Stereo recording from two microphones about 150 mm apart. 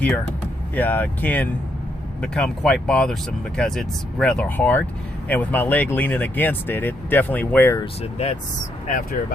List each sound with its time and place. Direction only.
0.8 s speech: 10° left (ahead or behind)
8.2 s speech: 45° left (ahead or behind)